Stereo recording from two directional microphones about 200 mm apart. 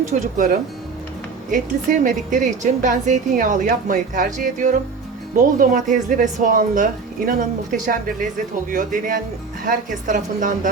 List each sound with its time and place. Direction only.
0.1 s a woman's voice: 40° right (ahead or behind)